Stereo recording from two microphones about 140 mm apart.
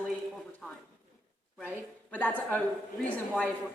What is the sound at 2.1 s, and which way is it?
Speech, 10° left (ahead or behind).